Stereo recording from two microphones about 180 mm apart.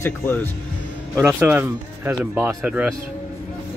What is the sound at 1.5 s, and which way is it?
Speech, 10° right (ahead or behind).